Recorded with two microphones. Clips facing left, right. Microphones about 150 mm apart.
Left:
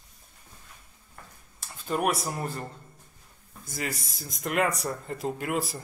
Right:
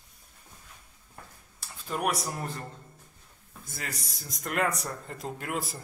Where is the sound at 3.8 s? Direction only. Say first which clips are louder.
Left 6 dB; 5° left (ahead or behind).